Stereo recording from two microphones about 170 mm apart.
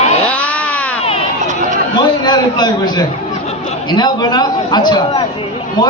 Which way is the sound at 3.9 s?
25° left (ahead or behind).